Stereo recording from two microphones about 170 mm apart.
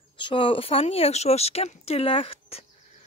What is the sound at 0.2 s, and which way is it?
Speech, 30° left (ahead or behind).